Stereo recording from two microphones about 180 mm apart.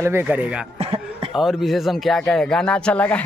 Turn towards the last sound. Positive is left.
turn(degrees=5)  # may be behind; listen again after turning